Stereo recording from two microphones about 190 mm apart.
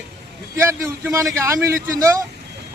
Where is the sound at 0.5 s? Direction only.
15° right (ahead or behind).